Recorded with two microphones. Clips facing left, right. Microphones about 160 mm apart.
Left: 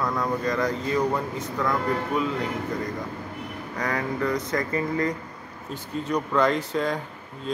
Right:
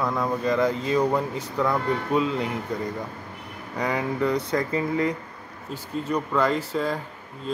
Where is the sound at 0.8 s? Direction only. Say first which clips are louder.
Right 2 dB; 20° right (ahead or behind).